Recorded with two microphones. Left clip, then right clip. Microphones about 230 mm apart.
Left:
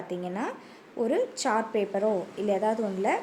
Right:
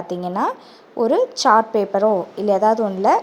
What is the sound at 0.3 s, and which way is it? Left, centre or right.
A woman's voice, right.